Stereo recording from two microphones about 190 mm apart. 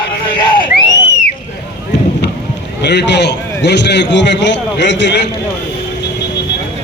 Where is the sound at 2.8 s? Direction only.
65° left (ahead or behind).